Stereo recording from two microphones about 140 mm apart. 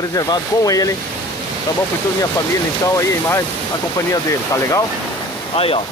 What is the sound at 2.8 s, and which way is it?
Speech, 25° left (ahead or behind).